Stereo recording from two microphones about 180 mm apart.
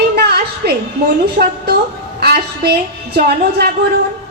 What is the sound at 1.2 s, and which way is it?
A woman's voice, 60° right (ahead or behind).